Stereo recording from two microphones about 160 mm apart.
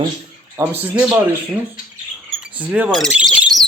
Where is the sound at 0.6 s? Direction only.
10° right (ahead or behind).